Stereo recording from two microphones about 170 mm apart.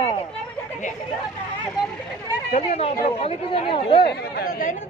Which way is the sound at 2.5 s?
35° left (ahead or behind).